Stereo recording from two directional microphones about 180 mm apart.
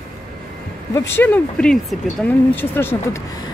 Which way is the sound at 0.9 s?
15° left (ahead or behind).